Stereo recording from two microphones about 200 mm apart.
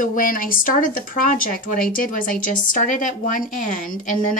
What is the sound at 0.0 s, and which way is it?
Speech, 40° left (ahead or behind).